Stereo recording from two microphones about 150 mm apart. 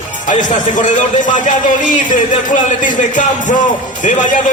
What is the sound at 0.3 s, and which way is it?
A man's voice, 55° left (ahead or behind).